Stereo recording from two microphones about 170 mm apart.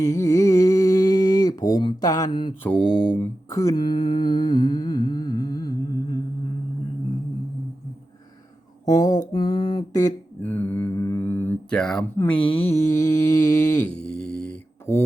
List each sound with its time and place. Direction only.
0.0 s mantra: 20° left (ahead or behind)
2.8 s speech: 5° left (ahead or behind)
3.2 s humming: 20° left (ahead or behind)
8.9 s mantra: 20° left (ahead or behind); by 12.0 s 5° left (ahead or behind)
12.1 s speech: 15° left (ahead or behind)
12.4 s mantra: 35° left (ahead or behind)
13.0 s mantra: 20° left (ahead or behind)
14.1 s mantra: 5° left (ahead or behind)